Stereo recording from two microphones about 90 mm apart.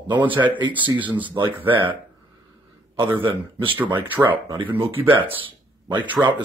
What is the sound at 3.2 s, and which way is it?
Speech, 75° right (ahead or behind).